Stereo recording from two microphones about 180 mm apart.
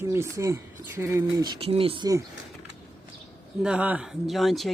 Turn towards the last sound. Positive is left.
turn(degrees=0)  # may be behind; listen again after turning